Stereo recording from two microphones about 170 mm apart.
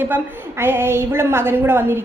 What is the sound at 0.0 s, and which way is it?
A woman's voice, 15° right (ahead or behind).